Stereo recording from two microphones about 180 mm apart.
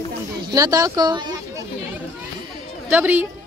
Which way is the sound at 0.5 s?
20° right (ahead or behind).